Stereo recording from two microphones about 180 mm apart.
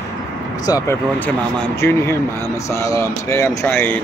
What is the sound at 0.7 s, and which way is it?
Speech, 15° left (ahead or behind).